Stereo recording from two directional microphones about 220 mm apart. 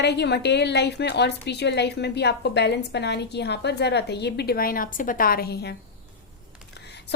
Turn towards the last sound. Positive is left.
turn(degrees=45)  # may be behind; listen again after turning